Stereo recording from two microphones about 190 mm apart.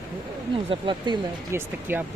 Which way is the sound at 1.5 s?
10° right (ahead or behind).